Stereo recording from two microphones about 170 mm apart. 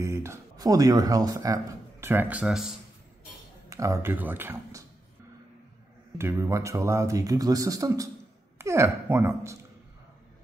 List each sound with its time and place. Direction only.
0.0 s speech: 15° right (ahead or behind)
3.7 s speech: 20° right (ahead or behind)
6.1 s speech: 15° right (ahead or behind)